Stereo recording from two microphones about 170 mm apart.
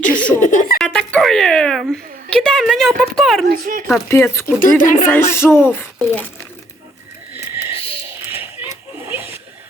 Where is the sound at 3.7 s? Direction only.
55° right (ahead or behind).